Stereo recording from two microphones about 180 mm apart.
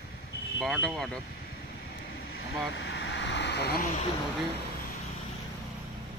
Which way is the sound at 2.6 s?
80° left.